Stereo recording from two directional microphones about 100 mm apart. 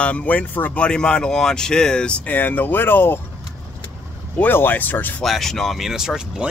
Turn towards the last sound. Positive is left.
turn(degrees=-5)  # may be behind; listen again after turning